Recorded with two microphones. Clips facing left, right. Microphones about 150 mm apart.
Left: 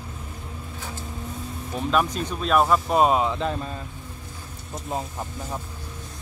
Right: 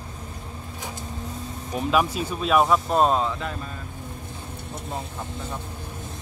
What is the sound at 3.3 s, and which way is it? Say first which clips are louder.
Speech: left 4 dB; 30° left (ahead or behind).